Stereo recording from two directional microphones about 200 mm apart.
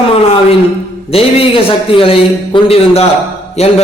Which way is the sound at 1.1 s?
30° left (ahead or behind).